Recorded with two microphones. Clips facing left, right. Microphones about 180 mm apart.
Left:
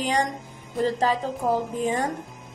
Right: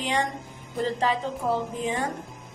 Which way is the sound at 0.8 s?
40° left (ahead or behind).